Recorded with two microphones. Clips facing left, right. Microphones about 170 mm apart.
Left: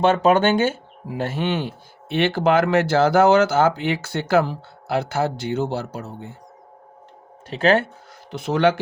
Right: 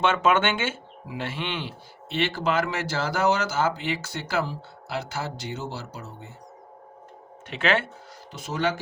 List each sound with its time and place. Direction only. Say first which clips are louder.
0.0 s speech: left 6 dB; 35° left (ahead or behind); by 6.3 s 55° left (ahead or behind)
7.5 s speech: left 7 dB; 40° left (ahead or behind)
8.3 s speech: left 8 dB; 60° left (ahead or behind)